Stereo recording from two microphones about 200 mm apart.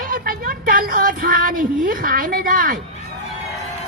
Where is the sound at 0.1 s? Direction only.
45° right (ahead or behind).